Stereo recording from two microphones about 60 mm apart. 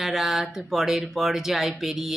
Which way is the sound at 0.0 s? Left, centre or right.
Centre.